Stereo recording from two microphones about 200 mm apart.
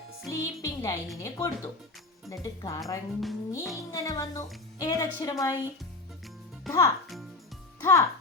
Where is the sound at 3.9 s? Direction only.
15° left (ahead or behind).